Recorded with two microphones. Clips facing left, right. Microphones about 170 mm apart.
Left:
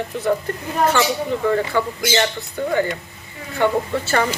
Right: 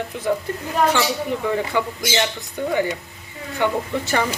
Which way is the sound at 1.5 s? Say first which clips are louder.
Left 4 dB; 15° right (ahead or behind).